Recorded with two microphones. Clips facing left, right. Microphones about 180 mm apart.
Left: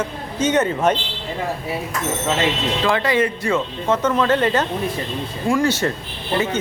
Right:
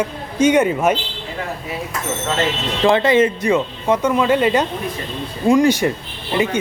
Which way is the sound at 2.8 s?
25° right (ahead or behind).